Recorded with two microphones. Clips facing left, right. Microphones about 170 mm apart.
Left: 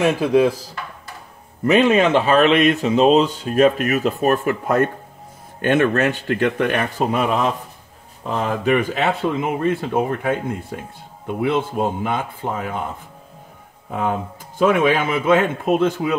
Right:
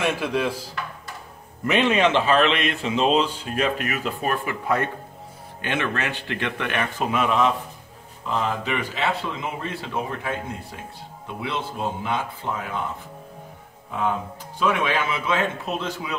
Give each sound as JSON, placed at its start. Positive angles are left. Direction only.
{"t": 0.0, "sound": "speech", "side_deg": 40}
{"t": 1.7, "sound": "speech", "side_deg": 40}
{"t": 13.8, "sound": "speech", "side_deg": 55}